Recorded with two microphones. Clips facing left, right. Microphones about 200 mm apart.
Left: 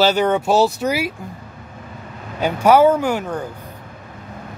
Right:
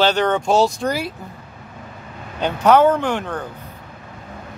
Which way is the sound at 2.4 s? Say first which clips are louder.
Left 1 dB; 10° left (ahead or behind).